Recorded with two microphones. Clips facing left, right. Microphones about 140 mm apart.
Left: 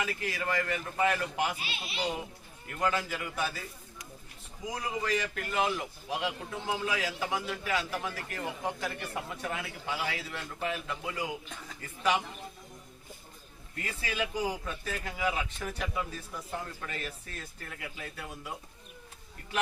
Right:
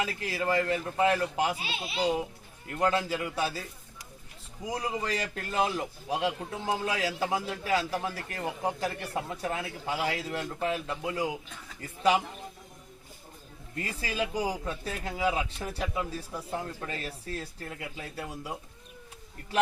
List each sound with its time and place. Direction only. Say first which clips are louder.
0.0 s a man's voice: right 3 dB; 30° right (ahead or behind)
5.0 s a man's voice: left 1 dB; 35° right (ahead or behind)
13.7 s a man's voice: right 2 dB; 35° right (ahead or behind)
14.4 s speech: right 1 dB; 10° right (ahead or behind)
14.7 s a man's voice: right 3 dB; 35° right (ahead or behind)